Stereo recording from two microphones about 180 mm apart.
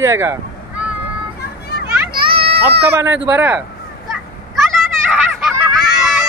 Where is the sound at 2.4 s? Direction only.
60° right (ahead or behind).